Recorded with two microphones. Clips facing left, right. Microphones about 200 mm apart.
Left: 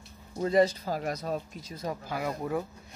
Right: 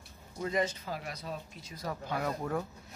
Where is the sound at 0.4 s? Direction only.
35° left (ahead or behind).